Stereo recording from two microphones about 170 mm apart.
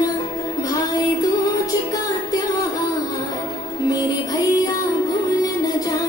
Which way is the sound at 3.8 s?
25° left (ahead or behind).